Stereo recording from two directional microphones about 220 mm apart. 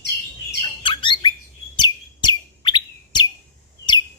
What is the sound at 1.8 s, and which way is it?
Chirp, 20° left (ahead or behind).